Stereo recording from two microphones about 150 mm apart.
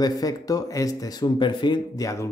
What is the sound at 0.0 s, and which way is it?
Speech, 25° left (ahead or behind).